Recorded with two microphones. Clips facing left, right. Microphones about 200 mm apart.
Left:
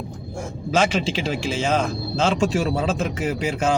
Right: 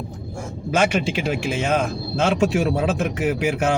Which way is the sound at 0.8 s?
55° right (ahead or behind).